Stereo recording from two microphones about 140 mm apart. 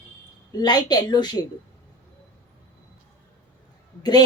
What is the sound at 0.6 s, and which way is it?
Speech, 30° left (ahead or behind).